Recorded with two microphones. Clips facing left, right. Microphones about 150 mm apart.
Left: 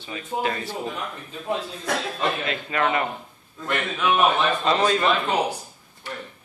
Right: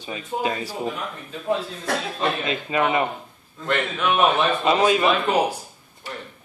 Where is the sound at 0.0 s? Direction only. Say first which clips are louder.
Right 1 dB; 15° right (ahead or behind).